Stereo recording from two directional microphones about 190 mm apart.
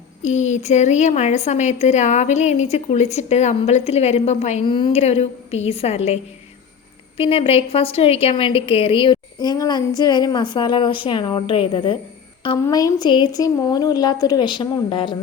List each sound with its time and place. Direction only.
0.2 s a woman's voice: 40° left (ahead or behind)
7.2 s a woman's voice: 30° left (ahead or behind)